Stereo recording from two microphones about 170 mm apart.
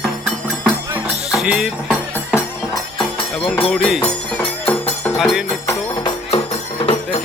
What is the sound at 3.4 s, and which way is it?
Music, 5° left (ahead or behind).